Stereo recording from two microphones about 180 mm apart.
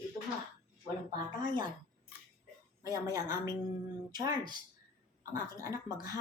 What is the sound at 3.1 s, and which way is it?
Speech, 20° right (ahead or behind).